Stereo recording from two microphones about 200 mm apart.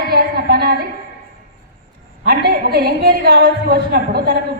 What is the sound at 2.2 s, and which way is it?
A woman's voice, 50° right (ahead or behind).